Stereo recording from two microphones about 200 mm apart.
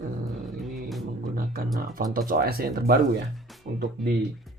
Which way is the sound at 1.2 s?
45° right (ahead or behind).